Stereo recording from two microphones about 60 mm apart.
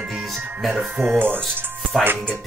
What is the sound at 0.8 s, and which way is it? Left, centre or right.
Speech, right.